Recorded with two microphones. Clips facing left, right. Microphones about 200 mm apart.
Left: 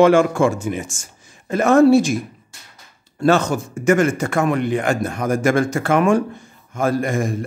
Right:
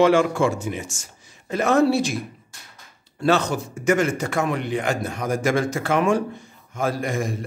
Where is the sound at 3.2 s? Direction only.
45° left (ahead or behind).